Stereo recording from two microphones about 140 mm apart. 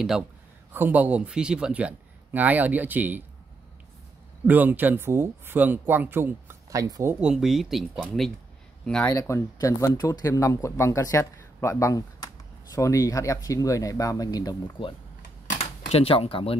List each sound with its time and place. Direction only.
0.7 s speech: 10° right (ahead or behind)
4.5 s speech: 15° right (ahead or behind)
7.2 s speech: 5° right (ahead or behind)
8.8 s speech: 5° left (ahead or behind)
9.1 s speech: 20° left (ahead or behind)
15.6 s speech: 45° left (ahead or behind)